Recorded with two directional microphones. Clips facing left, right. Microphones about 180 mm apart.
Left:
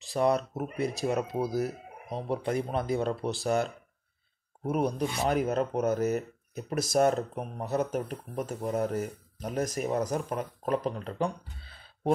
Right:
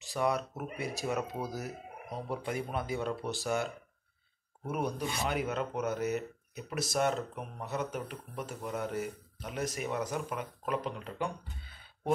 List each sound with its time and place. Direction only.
0.1 s speech: 35° left (ahead or behind)
4.6 s speech: 35° left (ahead or behind)